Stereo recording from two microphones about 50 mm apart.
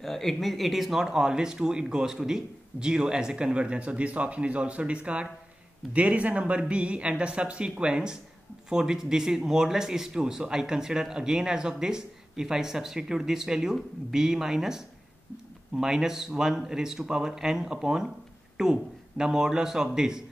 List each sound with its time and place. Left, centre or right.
0.0 s speech: centre